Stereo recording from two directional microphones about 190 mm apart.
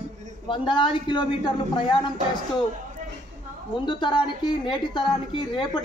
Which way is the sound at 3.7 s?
25° left (ahead or behind).